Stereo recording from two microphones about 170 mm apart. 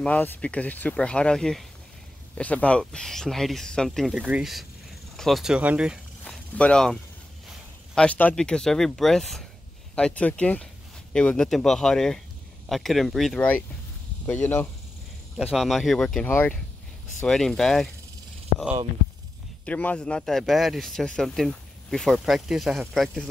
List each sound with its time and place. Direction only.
0.0 s speech: 10° left (ahead or behind); by 5.9 s 5° right (ahead or behind)
6.2 s a sound: 5° left (ahead or behind)
7.4 s speech: 5° left (ahead or behind)
15.3 s speech: centre (ahead or behind)
19.6 s speech: 10° left (ahead or behind)